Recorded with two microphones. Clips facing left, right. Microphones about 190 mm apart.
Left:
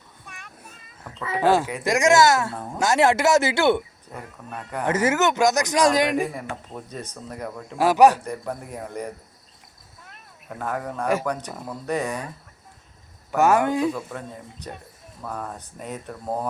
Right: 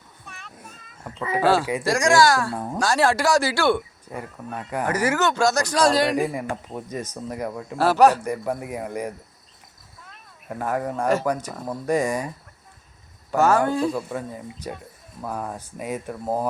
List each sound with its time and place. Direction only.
0.3 s child singing: 10° left (ahead or behind)
1.1 s speech: 10° right (ahead or behind)
1.4 s speech: 15° left (ahead or behind)
4.1 s speech: 10° right (ahead or behind)
4.9 s speech: 25° left (ahead or behind)
6.7 s speech: 10° right (ahead or behind)
7.8 s speech: 15° left (ahead or behind)
8.2 s speech: 10° right (ahead or behind)
10.6 s speech: 10° right (ahead or behind)
13.3 s speech: 15° left (ahead or behind)
13.9 s speech: 10° right (ahead or behind)